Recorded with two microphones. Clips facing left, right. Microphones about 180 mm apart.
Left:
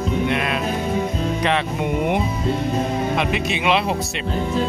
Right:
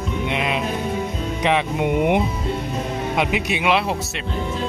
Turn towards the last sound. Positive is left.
turn(degrees=-10)  # may be behind; listen again after turning